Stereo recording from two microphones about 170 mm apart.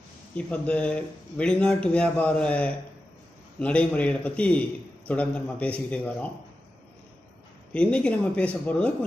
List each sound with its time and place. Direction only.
0.5 s a man's voice: 5° left (ahead or behind)
7.7 s a man's voice: 5° left (ahead or behind)